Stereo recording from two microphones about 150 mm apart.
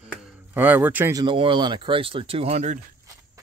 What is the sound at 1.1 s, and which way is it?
Speech, 30° right (ahead or behind).